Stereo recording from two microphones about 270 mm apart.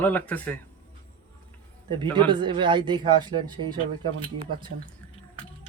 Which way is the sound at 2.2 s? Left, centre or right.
Centre.